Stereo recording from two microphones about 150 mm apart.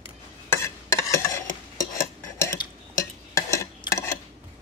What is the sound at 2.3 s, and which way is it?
Cutlery, 15° left (ahead or behind).